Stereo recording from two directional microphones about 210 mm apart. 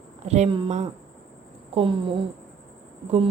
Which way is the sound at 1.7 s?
25° right (ahead or behind).